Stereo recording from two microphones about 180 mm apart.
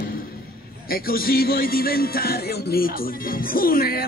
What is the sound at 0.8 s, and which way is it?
Music, 55° left (ahead or behind).